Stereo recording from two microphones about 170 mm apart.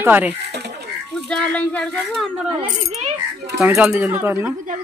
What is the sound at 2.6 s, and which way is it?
Speech, 40° right (ahead or behind).